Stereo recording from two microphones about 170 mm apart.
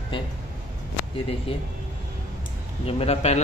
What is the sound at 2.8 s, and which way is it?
Speech, 35° left (ahead or behind).